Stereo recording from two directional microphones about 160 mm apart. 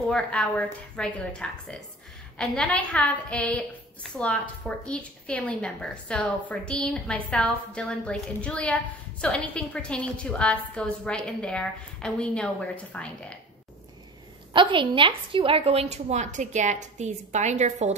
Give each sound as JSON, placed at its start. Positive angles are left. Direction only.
{"t": 0.1, "sound": "a woman's voice", "side_deg": 10}
{"t": 14.5, "sound": "a woman's voice", "side_deg": -30}